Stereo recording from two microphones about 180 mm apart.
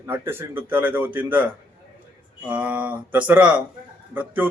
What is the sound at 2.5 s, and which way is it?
Speech, 10° right (ahead or behind).